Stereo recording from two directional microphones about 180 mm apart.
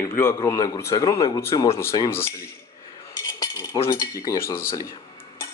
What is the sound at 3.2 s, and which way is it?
Cutlery, 20° left (ahead or behind).